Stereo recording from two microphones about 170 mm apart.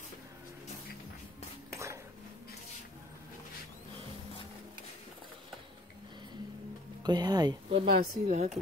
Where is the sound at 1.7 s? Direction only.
15° right (ahead or behind).